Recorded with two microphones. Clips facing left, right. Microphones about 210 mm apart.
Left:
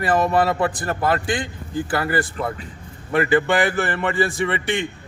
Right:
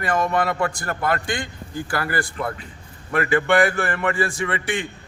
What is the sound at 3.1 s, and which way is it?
Speech, 30° left (ahead or behind).